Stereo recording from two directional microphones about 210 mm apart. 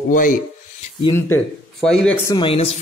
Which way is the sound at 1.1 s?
5° left (ahead or behind).